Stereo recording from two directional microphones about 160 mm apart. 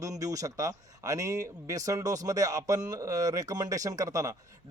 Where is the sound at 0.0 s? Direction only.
20° right (ahead or behind).